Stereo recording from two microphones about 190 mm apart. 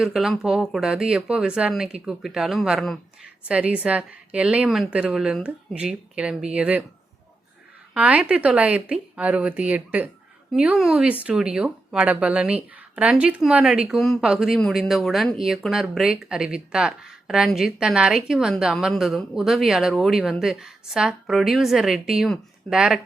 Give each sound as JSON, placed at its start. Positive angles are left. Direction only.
{"t": 0.0, "sound": "a woman's voice", "side_deg": 0}
{"t": 7.9, "sound": "a woman's voice", "side_deg": -5}